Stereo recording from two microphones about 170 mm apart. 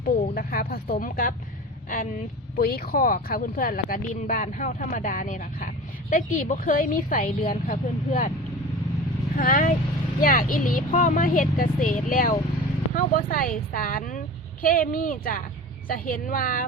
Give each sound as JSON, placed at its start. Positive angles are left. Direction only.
{"t": 0.0, "sound": "speech", "side_deg": 55}
{"t": 2.6, "sound": "speech", "side_deg": 60}
{"t": 9.4, "sound": "speech", "side_deg": 50}